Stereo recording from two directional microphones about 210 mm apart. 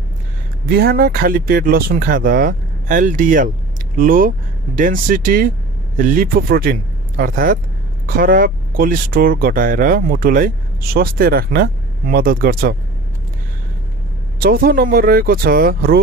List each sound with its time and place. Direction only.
0.7 s speech: 50° right (ahead or behind)
14.4 s speech: 45° right (ahead or behind)